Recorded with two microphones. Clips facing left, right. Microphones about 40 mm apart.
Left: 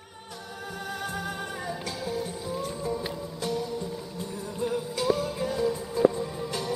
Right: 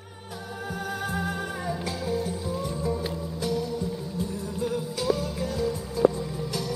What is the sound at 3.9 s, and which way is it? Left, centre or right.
Music, centre.